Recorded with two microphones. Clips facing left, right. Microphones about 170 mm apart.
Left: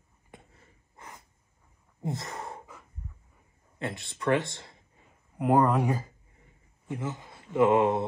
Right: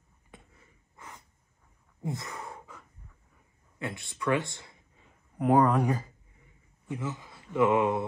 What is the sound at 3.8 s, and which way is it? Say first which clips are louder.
Speech: left 1 dB; 60° left (ahead or behind).